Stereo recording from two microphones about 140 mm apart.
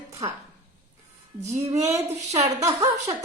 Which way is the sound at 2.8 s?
55° right (ahead or behind).